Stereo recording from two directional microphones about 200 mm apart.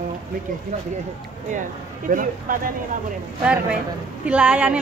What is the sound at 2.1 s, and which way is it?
Speech, 45° right (ahead or behind).